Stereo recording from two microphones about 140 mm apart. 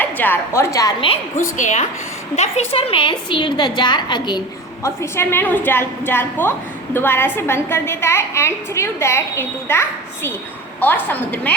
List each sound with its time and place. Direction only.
0.0 s a woman's voice: 15° left (ahead or behind)
1.4 s a woman's voice: 60° left (ahead or behind)
2.3 s a woman's voice: 50° left (ahead or behind); by 4.4 s 30° left (ahead or behind)
4.8 s a woman's voice: 15° left (ahead or behind)